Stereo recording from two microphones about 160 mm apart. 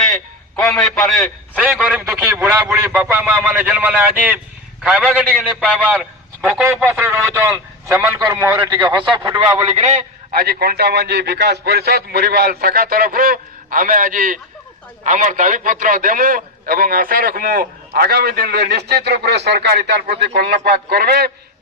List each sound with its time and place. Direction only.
0.5 s a man's voice: 5° left (ahead or behind); by 9.4 s 25° right (ahead or behind)
9.7 s a man's voice: 45° right (ahead or behind)
10.3 s a man's voice: 75° right (ahead or behind)